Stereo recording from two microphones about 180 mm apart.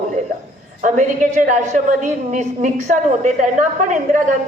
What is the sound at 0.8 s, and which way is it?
A woman's voice, 45° right (ahead or behind).